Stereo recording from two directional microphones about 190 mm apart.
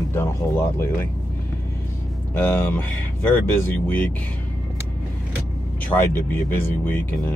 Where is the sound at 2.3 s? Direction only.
10° left (ahead or behind).